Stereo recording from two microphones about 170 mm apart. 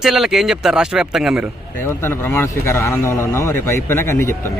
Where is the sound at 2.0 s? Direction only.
15° left (ahead or behind).